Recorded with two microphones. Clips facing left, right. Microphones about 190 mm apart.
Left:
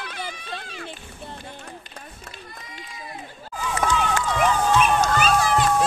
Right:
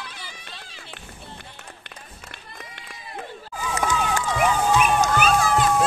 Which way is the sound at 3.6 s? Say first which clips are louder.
Left 1 dB; 10° right (ahead or behind).